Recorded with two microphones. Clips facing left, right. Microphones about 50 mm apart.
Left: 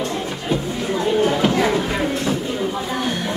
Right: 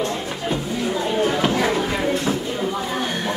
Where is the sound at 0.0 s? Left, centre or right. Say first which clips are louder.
Even; centre.